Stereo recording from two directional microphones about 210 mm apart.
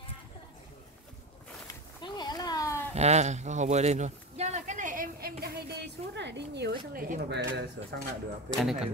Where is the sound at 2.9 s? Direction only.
30° right (ahead or behind).